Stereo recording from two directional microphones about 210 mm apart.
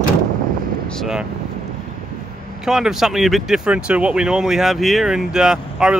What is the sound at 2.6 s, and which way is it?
Speech, centre (ahead or behind).